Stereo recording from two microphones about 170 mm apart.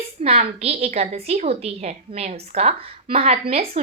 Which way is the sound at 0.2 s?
40° right (ahead or behind).